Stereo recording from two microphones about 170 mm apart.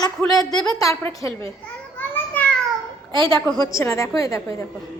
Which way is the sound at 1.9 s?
10° left (ahead or behind).